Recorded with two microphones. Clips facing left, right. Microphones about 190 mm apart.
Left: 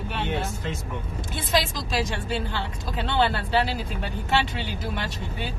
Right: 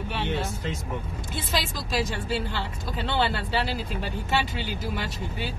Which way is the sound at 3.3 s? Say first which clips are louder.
Left 3 dB; 55° left (ahead or behind).